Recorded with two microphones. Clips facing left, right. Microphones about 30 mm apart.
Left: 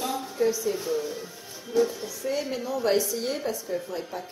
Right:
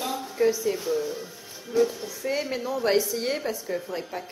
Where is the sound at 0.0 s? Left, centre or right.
Centre.